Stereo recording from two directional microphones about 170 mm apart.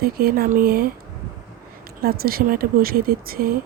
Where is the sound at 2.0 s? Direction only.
60° right (ahead or behind).